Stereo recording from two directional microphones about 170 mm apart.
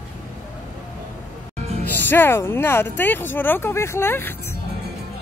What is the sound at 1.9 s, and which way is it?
Speech, 10° left (ahead or behind).